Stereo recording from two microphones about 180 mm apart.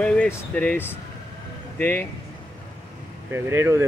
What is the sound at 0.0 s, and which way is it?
Speech, 5° left (ahead or behind).